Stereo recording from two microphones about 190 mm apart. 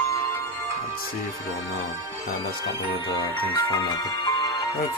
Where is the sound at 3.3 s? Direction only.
20° left (ahead or behind).